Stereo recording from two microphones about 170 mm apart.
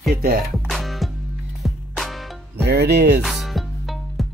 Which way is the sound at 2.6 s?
75° right (ahead or behind).